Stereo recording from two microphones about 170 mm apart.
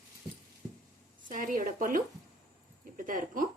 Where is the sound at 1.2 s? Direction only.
50° right (ahead or behind).